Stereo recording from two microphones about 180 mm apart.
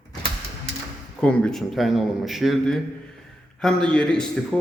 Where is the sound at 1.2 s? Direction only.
5° left (ahead or behind).